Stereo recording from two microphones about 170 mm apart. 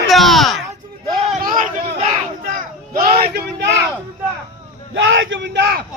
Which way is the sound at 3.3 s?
70° right (ahead or behind).